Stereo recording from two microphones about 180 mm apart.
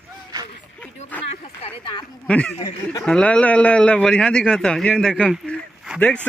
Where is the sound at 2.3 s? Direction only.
5° left (ahead or behind).